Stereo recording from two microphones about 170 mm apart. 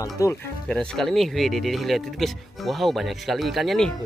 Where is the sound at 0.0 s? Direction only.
20° left (ahead or behind).